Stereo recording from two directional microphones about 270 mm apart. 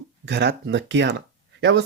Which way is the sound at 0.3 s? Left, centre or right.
Right.